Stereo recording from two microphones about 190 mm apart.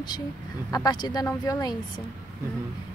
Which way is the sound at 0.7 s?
20° left (ahead or behind).